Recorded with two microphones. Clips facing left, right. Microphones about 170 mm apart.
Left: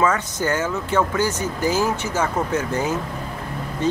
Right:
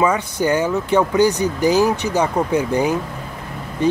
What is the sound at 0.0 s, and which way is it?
Speech, 15° right (ahead or behind).